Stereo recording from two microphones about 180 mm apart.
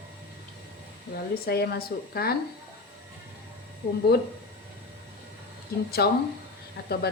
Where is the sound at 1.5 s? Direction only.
60° left (ahead or behind).